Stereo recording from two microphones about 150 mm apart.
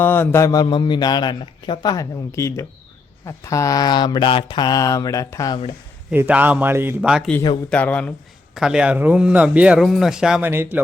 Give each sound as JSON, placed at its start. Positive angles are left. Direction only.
{"t": 0.0, "sound": "a man's voice", "side_deg": 15}
{"t": 6.1, "sound": "a man's voice", "side_deg": -10}
{"t": 7.7, "sound": "speech", "side_deg": 10}
{"t": 8.5, "sound": "a man's voice", "side_deg": -5}